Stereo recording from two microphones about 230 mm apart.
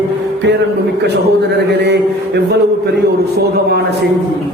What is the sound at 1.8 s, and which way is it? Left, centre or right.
Speech, right.